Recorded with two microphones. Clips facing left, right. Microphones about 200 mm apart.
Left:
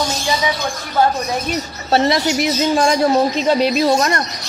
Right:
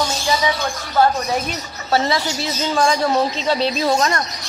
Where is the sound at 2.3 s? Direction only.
15° left (ahead or behind).